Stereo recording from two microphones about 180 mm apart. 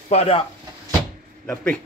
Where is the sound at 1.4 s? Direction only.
5° left (ahead or behind).